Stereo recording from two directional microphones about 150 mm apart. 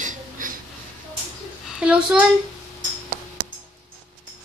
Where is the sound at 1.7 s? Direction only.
5° right (ahead or behind).